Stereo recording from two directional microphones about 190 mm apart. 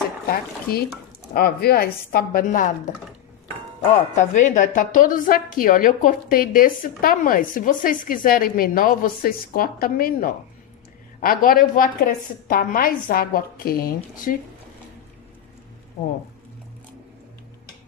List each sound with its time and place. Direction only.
0.3 s a woman's voice: 55° left (ahead or behind)
4.1 s a woman's voice: 40° left (ahead or behind)